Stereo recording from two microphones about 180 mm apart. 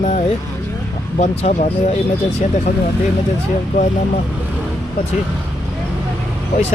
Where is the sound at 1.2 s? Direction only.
40° left (ahead or behind).